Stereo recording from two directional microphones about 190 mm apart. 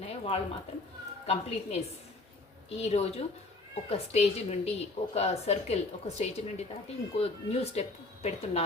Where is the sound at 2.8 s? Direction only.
35° left (ahead or behind).